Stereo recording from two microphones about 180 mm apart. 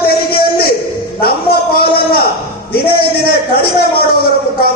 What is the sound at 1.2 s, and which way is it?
A man's voice, 55° left (ahead or behind).